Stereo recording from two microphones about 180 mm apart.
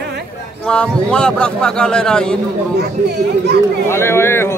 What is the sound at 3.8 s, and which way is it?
Speech, 15° left (ahead or behind).